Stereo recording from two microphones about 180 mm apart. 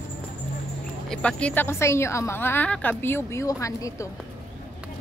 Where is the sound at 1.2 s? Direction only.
10° left (ahead or behind).